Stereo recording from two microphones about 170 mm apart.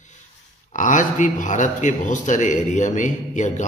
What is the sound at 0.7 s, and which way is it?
A man's voice, 45° left (ahead or behind).